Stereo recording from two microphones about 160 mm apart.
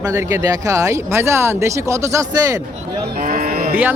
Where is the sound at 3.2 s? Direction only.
65° right (ahead or behind).